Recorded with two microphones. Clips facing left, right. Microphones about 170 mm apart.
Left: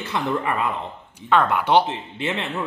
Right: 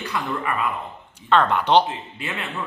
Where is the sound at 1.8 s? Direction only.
25° left (ahead or behind).